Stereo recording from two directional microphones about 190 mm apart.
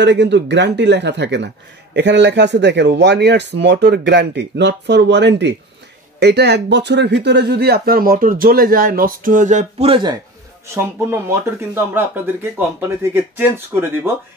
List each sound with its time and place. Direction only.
0.0 s speech: 65° right (ahead or behind); by 10.1 s 30° right (ahead or behind)
10.7 s speech: 15° right (ahead or behind)